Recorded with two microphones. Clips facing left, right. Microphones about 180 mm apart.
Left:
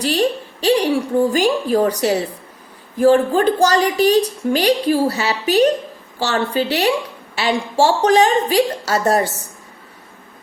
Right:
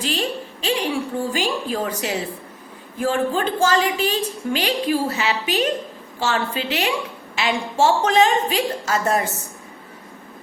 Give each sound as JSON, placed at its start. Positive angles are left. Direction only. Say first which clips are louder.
{"t": 0.0, "sound": "a woman's voice", "louder": "left 7 dB", "side_deg": 40}